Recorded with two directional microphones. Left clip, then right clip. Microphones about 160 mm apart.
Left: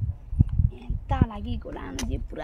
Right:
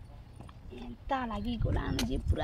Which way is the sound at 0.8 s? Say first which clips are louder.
Left 3 dB; 15° left (ahead or behind).